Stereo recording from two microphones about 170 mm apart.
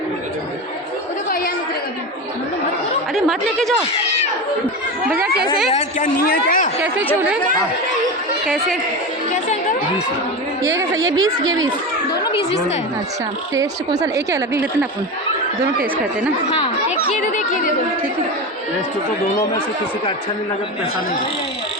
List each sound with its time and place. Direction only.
3.2 s speech: centre (ahead or behind)
5.7 s a man's voice: 55° left (ahead or behind)
10.6 s a woman's voice: 20° right (ahead or behind)
13.5 s a woman's voice: 20° right (ahead or behind)